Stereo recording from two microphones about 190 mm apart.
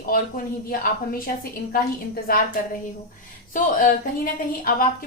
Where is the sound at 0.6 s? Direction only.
50° left (ahead or behind).